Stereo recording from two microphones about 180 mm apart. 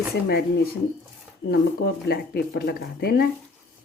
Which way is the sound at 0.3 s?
60° left (ahead or behind).